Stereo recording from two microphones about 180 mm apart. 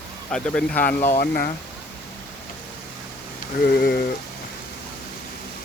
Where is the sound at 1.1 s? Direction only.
55° left (ahead or behind).